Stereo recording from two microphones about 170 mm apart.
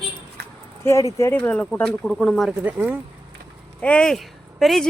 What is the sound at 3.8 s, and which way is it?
Speech, 5° left (ahead or behind).